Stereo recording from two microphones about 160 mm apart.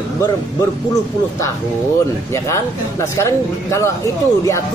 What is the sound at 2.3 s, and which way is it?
Speech, 20° left (ahead or behind).